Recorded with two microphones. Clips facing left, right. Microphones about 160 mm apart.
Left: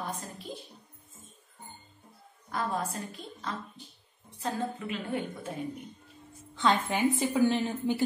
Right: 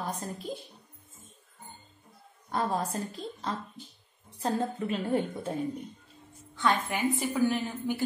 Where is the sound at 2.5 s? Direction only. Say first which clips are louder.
Right 2 dB; 35° right (ahead or behind).